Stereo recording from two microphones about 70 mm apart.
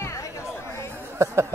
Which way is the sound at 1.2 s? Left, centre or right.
Right.